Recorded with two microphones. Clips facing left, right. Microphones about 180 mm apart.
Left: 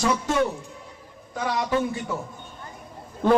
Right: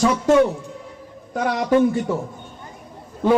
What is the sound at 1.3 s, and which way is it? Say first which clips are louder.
Speech: right 6 dB; 60° right (ahead or behind).